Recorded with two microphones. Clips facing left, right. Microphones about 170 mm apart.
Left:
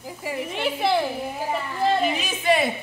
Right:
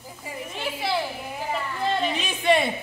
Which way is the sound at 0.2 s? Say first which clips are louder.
Left 6 dB; 75° left (ahead or behind).